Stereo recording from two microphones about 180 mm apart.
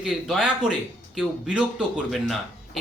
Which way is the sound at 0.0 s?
5° right (ahead or behind).